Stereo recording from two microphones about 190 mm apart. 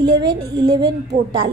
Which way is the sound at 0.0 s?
25° right (ahead or behind).